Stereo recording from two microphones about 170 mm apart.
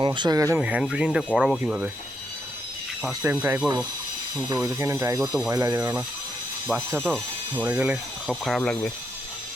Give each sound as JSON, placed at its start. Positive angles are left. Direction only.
{"t": 0.0, "sound": "speech", "side_deg": -30}
{"t": 0.6, "sound": "speech", "side_deg": -5}
{"t": 3.2, "sound": "speech", "side_deg": -10}
{"t": 4.4, "sound": "speech", "side_deg": -20}